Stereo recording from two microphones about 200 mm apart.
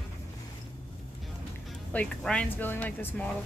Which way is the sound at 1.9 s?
5° left (ahead or behind).